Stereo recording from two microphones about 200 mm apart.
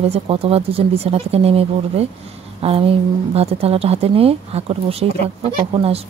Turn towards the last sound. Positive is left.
turn(degrees=-30)  # may be behind; listen again after turning